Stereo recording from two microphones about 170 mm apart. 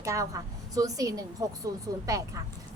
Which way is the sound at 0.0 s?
20° right (ahead or behind).